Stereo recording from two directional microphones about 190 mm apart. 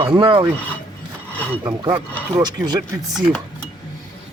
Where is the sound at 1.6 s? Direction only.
20° right (ahead or behind).